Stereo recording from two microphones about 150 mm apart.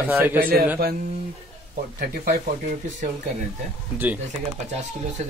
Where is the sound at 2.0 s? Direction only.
90° right.